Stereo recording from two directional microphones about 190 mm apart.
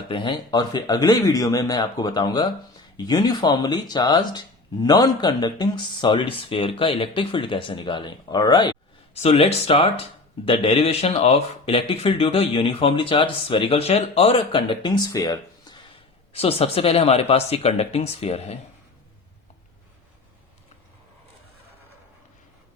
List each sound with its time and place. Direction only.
0.1 s speech: 25° left (ahead or behind)
9.1 s speech: 30° left (ahead or behind)
16.3 s speech: 30° left (ahead or behind)